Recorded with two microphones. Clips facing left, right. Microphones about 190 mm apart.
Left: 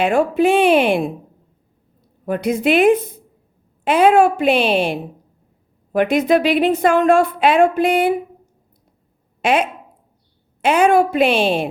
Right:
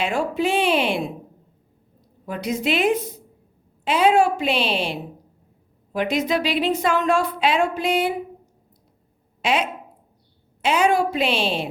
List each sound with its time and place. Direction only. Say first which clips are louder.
0.0 s speech: left 7 dB; 55° left (ahead or behind)
2.2 s a woman's voice: left 7 dB; 55° left (ahead or behind)
9.4 s a woman's voice: left 5 dB; 55° left (ahead or behind)